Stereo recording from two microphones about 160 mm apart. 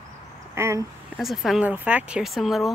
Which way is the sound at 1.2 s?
Centre (ahead or behind).